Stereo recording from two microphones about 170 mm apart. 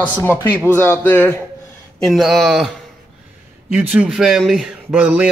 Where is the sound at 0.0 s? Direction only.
10° left (ahead or behind).